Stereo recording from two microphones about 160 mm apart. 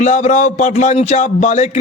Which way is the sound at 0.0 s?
50° left (ahead or behind).